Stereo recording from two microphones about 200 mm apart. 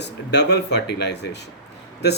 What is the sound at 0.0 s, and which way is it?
Speech, 60° left (ahead or behind).